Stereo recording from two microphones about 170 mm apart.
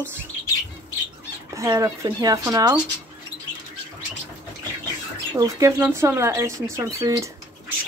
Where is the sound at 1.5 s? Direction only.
20° right (ahead or behind).